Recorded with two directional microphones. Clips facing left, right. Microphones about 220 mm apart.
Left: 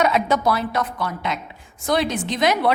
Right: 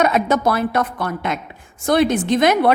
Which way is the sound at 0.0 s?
50° right (ahead or behind).